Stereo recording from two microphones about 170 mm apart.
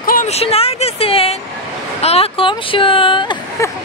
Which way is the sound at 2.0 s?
35° left (ahead or behind).